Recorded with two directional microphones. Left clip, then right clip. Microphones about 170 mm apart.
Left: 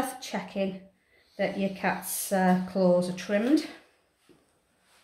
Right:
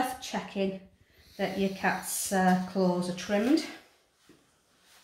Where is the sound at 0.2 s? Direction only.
50° left (ahead or behind).